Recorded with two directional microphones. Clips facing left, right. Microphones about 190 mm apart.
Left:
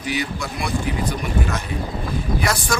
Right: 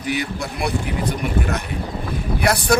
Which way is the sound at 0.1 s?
60° right (ahead or behind).